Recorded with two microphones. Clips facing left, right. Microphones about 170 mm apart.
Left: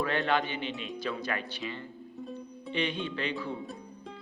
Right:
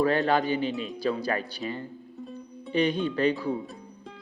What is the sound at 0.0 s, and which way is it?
Speech, 35° right (ahead or behind).